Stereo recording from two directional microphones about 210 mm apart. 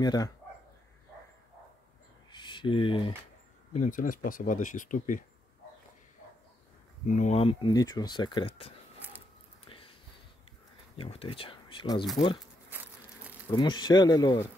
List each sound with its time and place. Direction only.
0.0 s speech: 20° left (ahead or behind)
2.3 s speech: 20° left (ahead or behind)
3.7 s speech: 35° left (ahead or behind)
7.1 s speech: 35° left (ahead or behind)
9.7 s a sound: 25° left (ahead or behind)
11.0 s speech: 25° left (ahead or behind)
13.5 s speech: 20° left (ahead or behind)